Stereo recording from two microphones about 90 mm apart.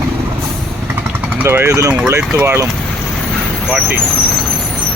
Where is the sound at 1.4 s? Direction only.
25° right (ahead or behind).